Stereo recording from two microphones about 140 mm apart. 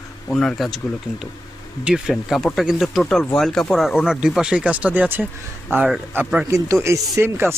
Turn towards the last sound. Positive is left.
turn(degrees=-15)  # may be behind; listen again after turning